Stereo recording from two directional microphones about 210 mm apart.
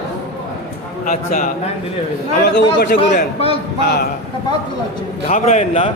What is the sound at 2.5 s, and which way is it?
A man's voice, 50° left (ahead or behind).